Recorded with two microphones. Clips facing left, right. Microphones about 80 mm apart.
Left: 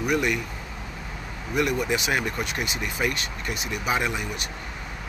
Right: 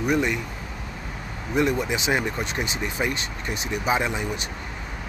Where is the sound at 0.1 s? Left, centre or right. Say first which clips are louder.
Right 1 dB; right.